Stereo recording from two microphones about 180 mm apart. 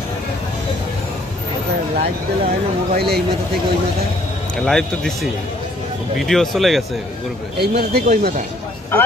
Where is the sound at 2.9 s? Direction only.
60° right (ahead or behind).